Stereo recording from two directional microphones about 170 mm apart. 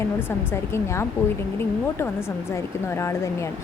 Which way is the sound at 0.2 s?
15° left (ahead or behind).